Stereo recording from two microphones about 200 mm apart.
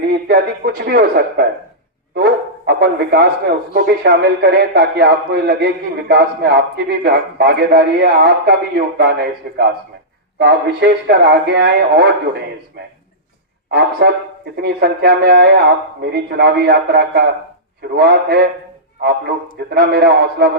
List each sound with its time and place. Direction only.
0.3 s a man's voice: 50° right (ahead or behind)
13.7 s a man's voice: 50° right (ahead or behind)